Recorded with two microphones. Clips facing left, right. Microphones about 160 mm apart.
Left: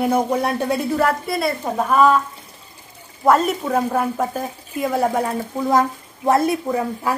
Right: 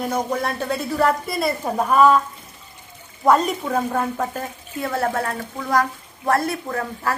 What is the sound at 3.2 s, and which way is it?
A woman's voice, 5° left (ahead or behind).